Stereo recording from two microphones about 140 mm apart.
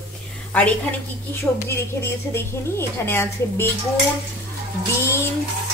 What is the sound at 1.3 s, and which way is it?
A woman's voice, 20° left (ahead or behind).